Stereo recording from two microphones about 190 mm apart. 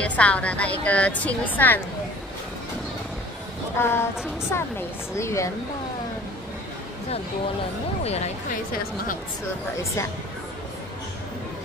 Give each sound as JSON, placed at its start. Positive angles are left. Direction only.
{"t": 0.0, "sound": "a woman's voice", "side_deg": 5}
{"t": 3.7, "sound": "a woman's voice", "side_deg": 10}
{"t": 8.0, "sound": "speech", "side_deg": 35}